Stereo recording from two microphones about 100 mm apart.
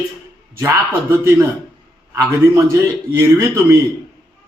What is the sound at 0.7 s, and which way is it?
A man's voice, 25° right (ahead or behind).